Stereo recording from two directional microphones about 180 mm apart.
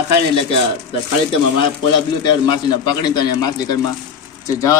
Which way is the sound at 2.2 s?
25° left (ahead or behind).